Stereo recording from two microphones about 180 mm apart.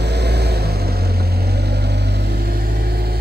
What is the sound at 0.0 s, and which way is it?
Vehicle, 65° right (ahead or behind).